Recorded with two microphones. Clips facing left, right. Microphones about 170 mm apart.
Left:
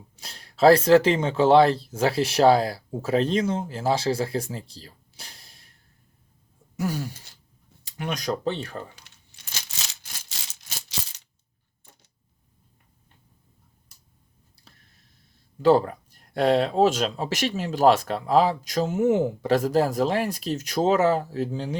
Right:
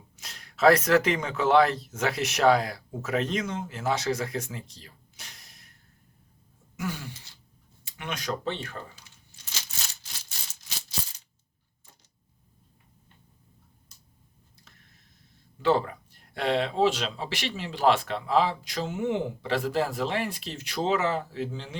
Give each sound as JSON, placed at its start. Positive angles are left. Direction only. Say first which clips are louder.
{"t": 0.2, "sound": "speech", "louder": "left 4 dB", "side_deg": 30}
{"t": 6.7, "sound": "throat clearing", "louder": "left 6 dB", "side_deg": 40}
{"t": 7.9, "sound": "speech", "louder": "left 5 dB", "side_deg": 35}
{"t": 15.6, "sound": "speech", "louder": "left 6 dB", "side_deg": 40}